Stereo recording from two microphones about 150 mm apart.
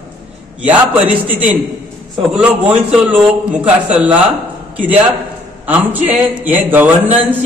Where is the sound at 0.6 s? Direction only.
10° right (ahead or behind).